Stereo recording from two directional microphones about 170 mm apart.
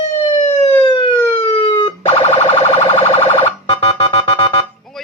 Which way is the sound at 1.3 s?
30° left (ahead or behind).